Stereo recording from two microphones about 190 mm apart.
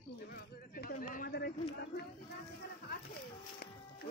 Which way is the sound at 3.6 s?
55° left (ahead or behind).